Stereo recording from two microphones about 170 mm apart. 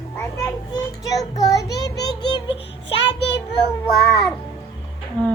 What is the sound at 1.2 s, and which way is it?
Child singing, 20° left (ahead or behind).